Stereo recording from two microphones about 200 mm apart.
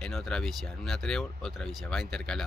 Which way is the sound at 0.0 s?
5° left (ahead or behind).